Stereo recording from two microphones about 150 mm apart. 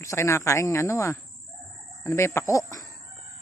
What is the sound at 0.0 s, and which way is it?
Speech, 20° left (ahead or behind).